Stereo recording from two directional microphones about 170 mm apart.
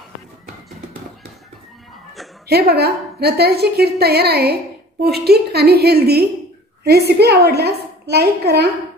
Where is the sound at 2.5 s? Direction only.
70° right (ahead or behind).